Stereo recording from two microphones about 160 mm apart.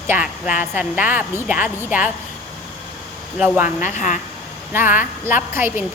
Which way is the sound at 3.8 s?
50° left (ahead or behind).